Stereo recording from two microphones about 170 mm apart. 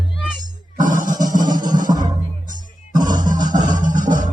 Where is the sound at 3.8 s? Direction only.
50° right (ahead or behind).